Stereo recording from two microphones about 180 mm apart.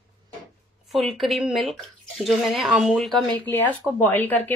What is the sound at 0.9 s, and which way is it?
Speech, centre (ahead or behind).